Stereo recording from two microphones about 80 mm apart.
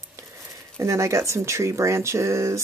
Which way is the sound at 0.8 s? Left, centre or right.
Right.